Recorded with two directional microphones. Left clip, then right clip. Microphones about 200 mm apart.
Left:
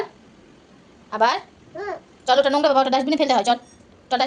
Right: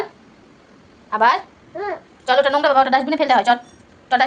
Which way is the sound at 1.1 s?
15° left (ahead or behind).